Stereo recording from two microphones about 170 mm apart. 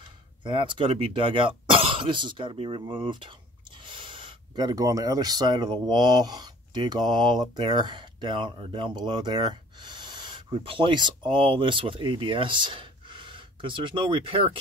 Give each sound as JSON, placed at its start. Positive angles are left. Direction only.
{"t": 0.4, "sound": "speech", "side_deg": -30}